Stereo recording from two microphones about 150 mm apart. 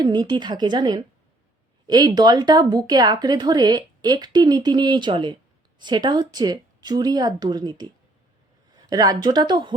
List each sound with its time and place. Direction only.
0.0 s speech: 30° right (ahead or behind)